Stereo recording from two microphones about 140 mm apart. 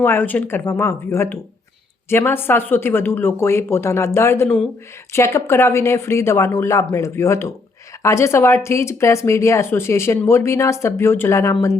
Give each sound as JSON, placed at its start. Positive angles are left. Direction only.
{"t": 0.0, "sound": "speech", "side_deg": 15}
{"t": 4.4, "sound": "speech", "side_deg": 5}
{"t": 5.1, "sound": "speech", "side_deg": 20}